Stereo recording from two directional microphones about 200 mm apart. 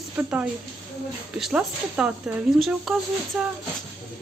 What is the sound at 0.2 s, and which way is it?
A woman's voice, 5° right (ahead or behind).